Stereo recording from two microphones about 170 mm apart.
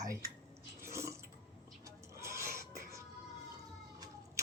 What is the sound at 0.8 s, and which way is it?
Drip, 15° right (ahead or behind).